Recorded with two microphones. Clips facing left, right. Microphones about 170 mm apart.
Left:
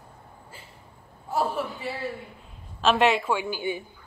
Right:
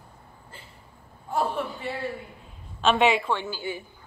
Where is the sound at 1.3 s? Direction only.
5° left (ahead or behind).